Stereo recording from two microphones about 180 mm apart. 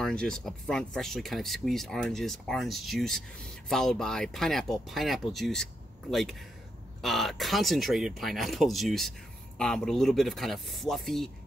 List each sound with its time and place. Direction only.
0.0 s speech: 5° left (ahead or behind)